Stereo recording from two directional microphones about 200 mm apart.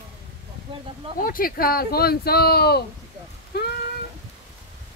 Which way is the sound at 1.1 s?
45° left (ahead or behind).